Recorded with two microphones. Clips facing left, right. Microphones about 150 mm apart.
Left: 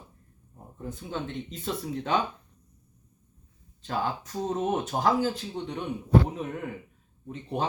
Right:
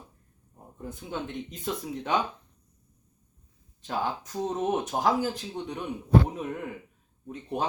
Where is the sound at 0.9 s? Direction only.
15° right (ahead or behind).